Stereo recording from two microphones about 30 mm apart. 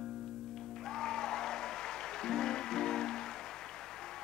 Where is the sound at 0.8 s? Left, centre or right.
Centre.